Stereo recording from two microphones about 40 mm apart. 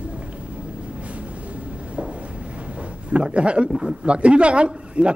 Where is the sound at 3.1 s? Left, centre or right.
Right.